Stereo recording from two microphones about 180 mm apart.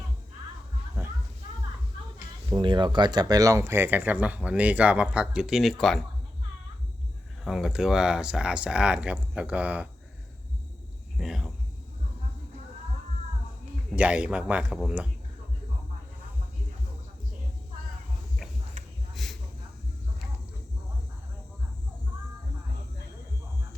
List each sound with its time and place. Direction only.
1.0 s music: 15° right (ahead or behind)
2.1 s speech: 25° right (ahead or behind); by 6.0 s centre (ahead or behind)
7.4 s speech: centre (ahead or behind)
11.2 s speech: centre (ahead or behind)
13.9 s speech: 5° right (ahead or behind)
19.1 s a sound: centre (ahead or behind)